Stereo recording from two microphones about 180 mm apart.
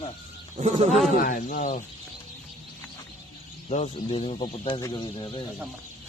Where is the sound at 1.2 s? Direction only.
50° left (ahead or behind).